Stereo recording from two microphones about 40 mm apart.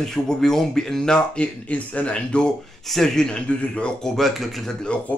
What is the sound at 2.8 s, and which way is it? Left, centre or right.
Speech, centre.